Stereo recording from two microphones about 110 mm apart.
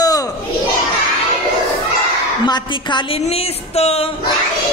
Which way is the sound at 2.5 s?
45° left (ahead or behind).